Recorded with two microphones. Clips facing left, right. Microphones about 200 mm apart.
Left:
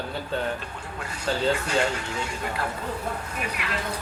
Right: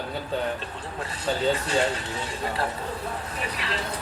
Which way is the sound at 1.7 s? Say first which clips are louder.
Even; 35° right (ahead or behind).